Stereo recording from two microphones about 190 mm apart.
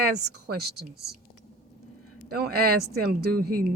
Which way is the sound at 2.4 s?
55° right (ahead or behind).